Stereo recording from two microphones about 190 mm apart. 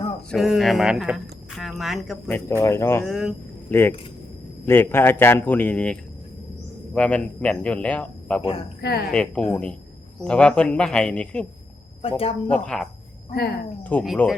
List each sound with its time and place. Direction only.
0.3 s speech: centre (ahead or behind)
2.3 s speech: 15° left (ahead or behind)
3.1 s speech: centre (ahead or behind)
3.7 s speech: 10° left (ahead or behind)
8.4 s speech: 30° left (ahead or behind)
8.8 s a woman's voice: 55° left (ahead or behind)
9.1 s speech: 5° left (ahead or behind)
12.0 s speech: 30° left (ahead or behind)
12.5 s speech: 5° left (ahead or behind)